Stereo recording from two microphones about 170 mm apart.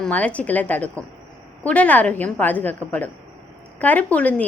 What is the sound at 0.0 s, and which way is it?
A woman's voice, 5° left (ahead or behind).